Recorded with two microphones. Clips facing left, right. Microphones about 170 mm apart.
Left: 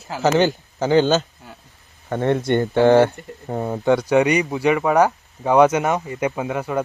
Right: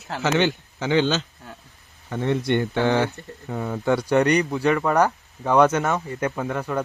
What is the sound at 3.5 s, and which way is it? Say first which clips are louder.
Speech: left 4 dB; 30° left (ahead or behind).